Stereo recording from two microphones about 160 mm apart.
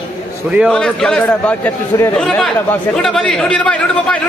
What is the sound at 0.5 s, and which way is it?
A man's voice, centre (ahead or behind).